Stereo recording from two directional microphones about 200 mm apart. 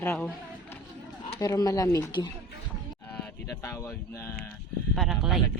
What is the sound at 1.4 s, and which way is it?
Speech, 15° left (ahead or behind).